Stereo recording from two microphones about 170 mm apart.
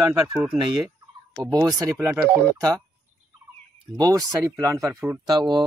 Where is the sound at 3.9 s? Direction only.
20° right (ahead or behind).